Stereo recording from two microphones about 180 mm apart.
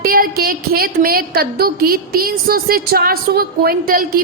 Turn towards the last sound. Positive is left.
turn(degrees=-55)  # may be behind; listen again after turning